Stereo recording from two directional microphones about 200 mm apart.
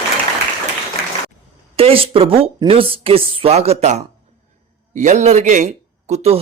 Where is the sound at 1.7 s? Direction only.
30° right (ahead or behind).